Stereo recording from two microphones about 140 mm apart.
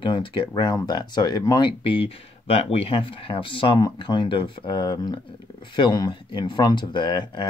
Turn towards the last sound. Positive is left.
turn(degrees=35)  # may be behind; listen again after turning